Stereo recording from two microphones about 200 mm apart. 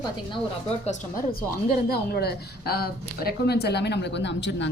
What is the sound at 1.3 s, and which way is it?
A woman's voice, 50° left (ahead or behind).